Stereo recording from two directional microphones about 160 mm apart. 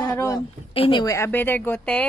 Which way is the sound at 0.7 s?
35° left (ahead or behind).